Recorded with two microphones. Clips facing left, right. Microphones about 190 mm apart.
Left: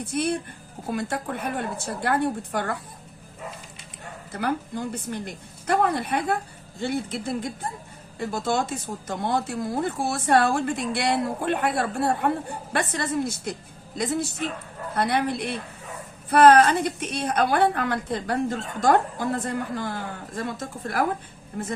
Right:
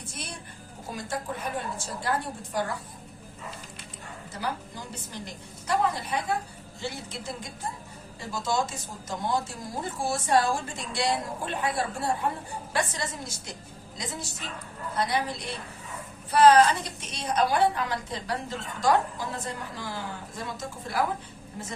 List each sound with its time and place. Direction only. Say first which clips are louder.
0.0 s a woman's voice: left 15 dB; 60° left (ahead or behind)
4.3 s a woman's voice: left 7 dB; 60° left (ahead or behind)